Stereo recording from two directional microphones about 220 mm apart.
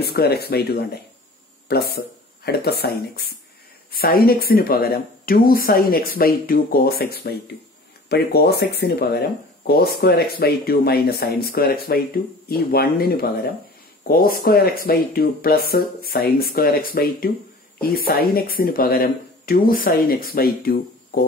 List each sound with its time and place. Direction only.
0.0 s speech: 45° left (ahead or behind)